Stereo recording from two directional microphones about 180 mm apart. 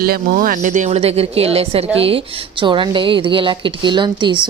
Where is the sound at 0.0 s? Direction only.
55° right (ahead or behind).